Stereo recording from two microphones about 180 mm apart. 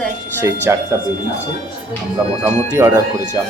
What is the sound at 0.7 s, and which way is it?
Speech, 15° right (ahead or behind).